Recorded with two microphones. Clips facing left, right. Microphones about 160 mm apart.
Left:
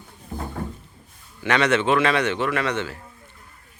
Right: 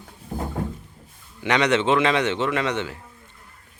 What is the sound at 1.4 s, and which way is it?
A man's voice, 20° right (ahead or behind).